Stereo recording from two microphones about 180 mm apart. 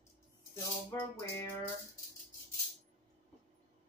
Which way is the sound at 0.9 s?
15° left (ahead or behind).